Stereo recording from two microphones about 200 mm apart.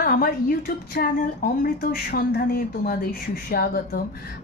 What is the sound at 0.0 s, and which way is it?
A woman's voice, 45° left (ahead or behind).